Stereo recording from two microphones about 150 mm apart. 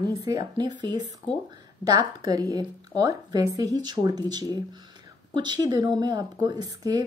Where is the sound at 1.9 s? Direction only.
25° right (ahead or behind).